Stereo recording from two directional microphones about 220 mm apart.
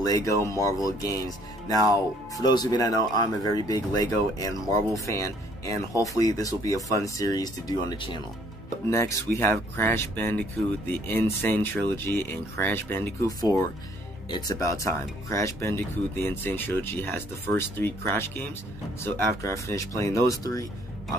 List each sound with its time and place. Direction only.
0.0 s speech: 15° left (ahead or behind)